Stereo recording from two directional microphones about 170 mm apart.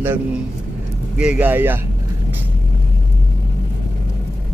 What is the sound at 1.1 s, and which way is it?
Speech, 5° right (ahead or behind).